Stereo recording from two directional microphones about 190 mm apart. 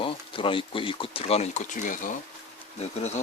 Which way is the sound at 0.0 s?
25° left (ahead or behind).